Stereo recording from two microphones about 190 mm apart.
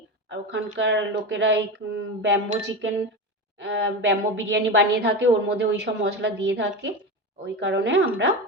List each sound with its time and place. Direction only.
0.3 s a woman's voice: 65° right (ahead or behind)